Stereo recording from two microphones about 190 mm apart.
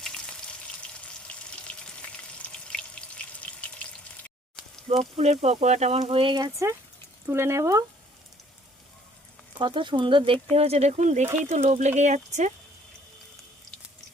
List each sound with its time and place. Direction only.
0.0 s frying: 5° left (ahead or behind)
2.6 s water: 5° left (ahead or behind)
3.4 s frying: 5° left (ahead or behind)
5.1 s speech: 35° right (ahead or behind); by 7.9 s 15° right (ahead or behind)
9.6 s speech: 25° right (ahead or behind)